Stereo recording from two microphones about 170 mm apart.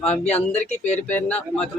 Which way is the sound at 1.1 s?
10° left (ahead or behind).